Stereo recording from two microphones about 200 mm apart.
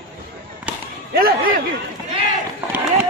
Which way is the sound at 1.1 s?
45° right (ahead or behind).